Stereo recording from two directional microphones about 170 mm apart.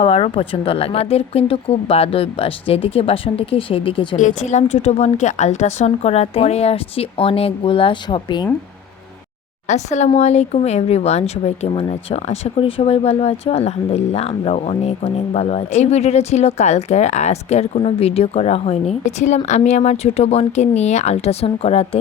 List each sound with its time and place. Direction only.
0.0 s speech: 35° left (ahead or behind)
4.2 s speech: 45° left (ahead or behind); by 8.4 s 25° left (ahead or behind)
9.6 s speech: 45° left (ahead or behind)